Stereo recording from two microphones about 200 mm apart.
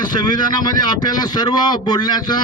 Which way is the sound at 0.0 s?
20° left (ahead or behind).